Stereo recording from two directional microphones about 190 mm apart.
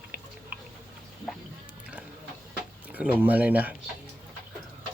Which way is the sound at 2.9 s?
10° right (ahead or behind).